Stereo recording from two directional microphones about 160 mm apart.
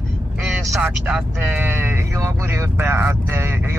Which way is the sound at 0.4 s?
5° right (ahead or behind).